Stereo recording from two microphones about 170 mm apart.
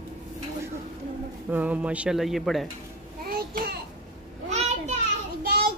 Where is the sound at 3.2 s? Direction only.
65° right (ahead or behind).